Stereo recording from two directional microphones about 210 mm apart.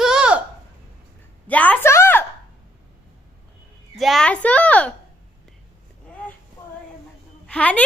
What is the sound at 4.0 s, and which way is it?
Speech, centre (ahead or behind).